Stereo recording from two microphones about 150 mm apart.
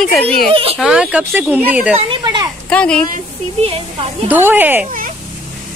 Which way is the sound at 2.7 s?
5° left (ahead or behind).